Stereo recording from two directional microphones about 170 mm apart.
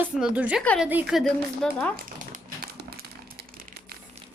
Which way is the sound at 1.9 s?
60° right (ahead or behind).